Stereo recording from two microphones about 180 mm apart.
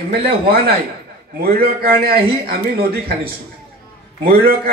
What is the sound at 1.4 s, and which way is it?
A man's voice, 55° right (ahead or behind).